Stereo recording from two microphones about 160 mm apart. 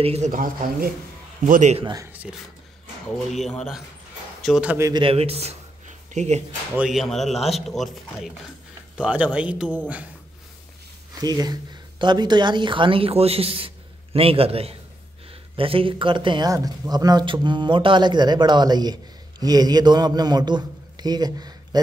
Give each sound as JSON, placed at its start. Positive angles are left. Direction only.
{"t": 0.0, "sound": "speech", "side_deg": -40}
{"t": 0.3, "sound": "speech", "side_deg": -60}
{"t": 1.4, "sound": "a man's voice", "side_deg": -50}
{"t": 1.8, "sound": "a man's voice", "side_deg": -25}
{"t": 3.3, "sound": "a man's voice", "side_deg": 0}
{"t": 4.7, "sound": "a man's voice", "side_deg": -20}
{"t": 5.0, "sound": "speech", "side_deg": -40}
{"t": 6.7, "sound": "speech", "side_deg": -5}
{"t": 11.1, "sound": "a woman's voice", "side_deg": -25}